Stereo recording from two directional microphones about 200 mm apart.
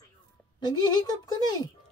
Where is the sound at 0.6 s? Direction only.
20° left (ahead or behind).